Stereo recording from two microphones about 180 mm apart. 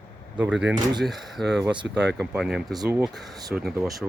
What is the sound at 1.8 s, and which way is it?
Speech, 70° right (ahead or behind).